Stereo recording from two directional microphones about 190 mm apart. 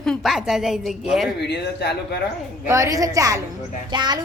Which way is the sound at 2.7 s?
15° right (ahead or behind).